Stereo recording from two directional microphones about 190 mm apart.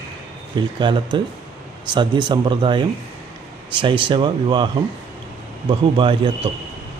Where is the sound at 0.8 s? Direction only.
25° right (ahead or behind).